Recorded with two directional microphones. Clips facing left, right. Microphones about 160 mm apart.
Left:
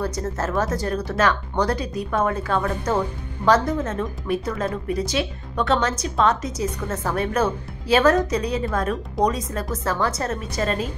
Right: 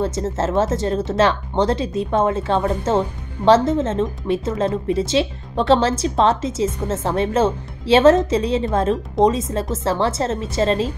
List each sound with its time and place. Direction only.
0.0 s speech: 25° right (ahead or behind)